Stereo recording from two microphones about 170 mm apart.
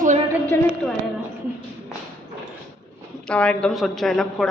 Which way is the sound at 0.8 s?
Centre (ahead or behind).